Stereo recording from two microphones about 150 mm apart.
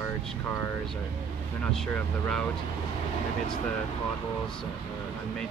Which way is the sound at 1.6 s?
5° left (ahead or behind).